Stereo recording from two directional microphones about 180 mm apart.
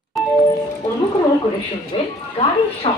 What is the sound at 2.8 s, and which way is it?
Speech, 30° left (ahead or behind).